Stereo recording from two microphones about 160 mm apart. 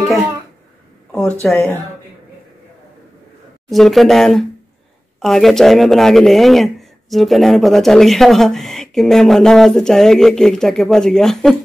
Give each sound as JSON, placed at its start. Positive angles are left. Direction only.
{"t": 1.4, "sound": "speech", "side_deg": 5}
{"t": 3.7, "sound": "speech", "side_deg": 0}